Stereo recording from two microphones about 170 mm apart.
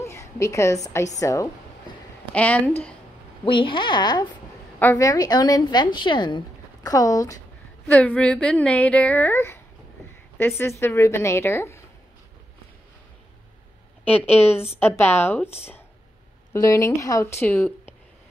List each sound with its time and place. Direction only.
0.0 s a woman's voice: 15° left (ahead or behind)
2.3 s speech: 10° left (ahead or behind)
3.4 s a woman's voice: 30° left (ahead or behind)
7.8 s speech: 10° left (ahead or behind)
10.6 s speech: 15° left (ahead or behind)
14.0 s speech: 10° left (ahead or behind)
16.5 s speech: 20° left (ahead or behind)